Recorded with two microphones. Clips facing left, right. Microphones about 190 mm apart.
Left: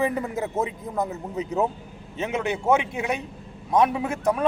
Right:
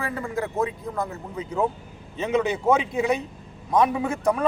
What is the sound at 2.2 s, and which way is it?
Speech, 5° left (ahead or behind).